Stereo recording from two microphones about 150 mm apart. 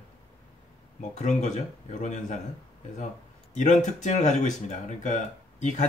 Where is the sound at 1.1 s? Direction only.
50° left (ahead or behind).